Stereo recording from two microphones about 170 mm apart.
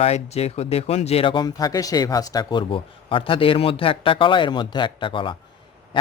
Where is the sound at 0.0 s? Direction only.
40° left (ahead or behind).